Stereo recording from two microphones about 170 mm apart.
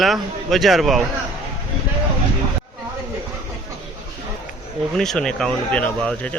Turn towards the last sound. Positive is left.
turn(degrees=5)  # may be behind; listen again after turning